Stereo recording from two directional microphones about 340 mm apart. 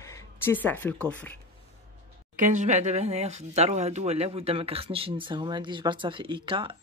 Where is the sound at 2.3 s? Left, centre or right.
Right.